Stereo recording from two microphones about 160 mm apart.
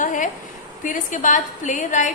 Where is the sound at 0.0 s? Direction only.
55° left (ahead or behind).